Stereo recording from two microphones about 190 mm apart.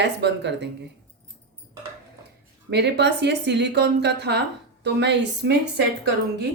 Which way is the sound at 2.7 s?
65° right (ahead or behind).